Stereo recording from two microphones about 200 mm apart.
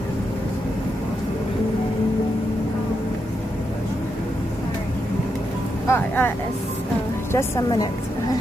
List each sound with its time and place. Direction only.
5.9 s speech: 10° left (ahead or behind)
7.3 s a woman's voice: 15° left (ahead or behind)